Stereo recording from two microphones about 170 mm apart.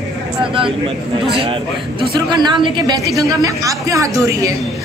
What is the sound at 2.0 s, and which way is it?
A woman's voice, 25° right (ahead or behind).